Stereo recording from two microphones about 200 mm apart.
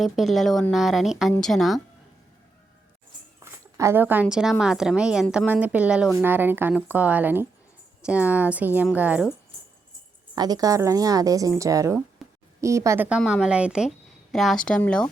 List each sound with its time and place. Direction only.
0.0 s speech: centre (ahead or behind)
3.4 s a woman's voice: 15° right (ahead or behind)
10.3 s a woman's voice: 20° right (ahead or behind); by 15.1 s 5° left (ahead or behind)